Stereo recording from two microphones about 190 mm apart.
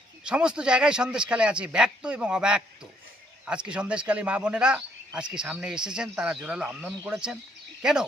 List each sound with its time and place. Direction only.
0.3 s speech: 5° right (ahead or behind)